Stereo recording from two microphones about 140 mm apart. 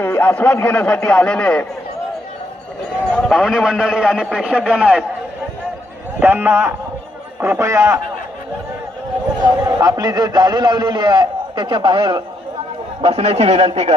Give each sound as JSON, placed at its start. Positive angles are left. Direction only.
{"t": 0.0, "sound": "a man's voice", "side_deg": 15}
{"t": 3.1, "sound": "a man's voice", "side_deg": 5}
{"t": 6.1, "sound": "a man's voice", "side_deg": -15}
{"t": 9.6, "sound": "a man's voice", "side_deg": -20}
{"t": 13.0, "sound": "a man's voice", "side_deg": -45}